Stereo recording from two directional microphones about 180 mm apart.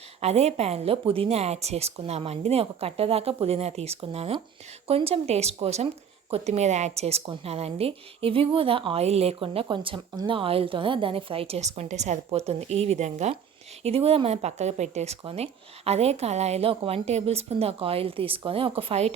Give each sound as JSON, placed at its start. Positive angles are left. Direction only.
{"t": 0.2, "sound": "a woman's voice", "side_deg": -35}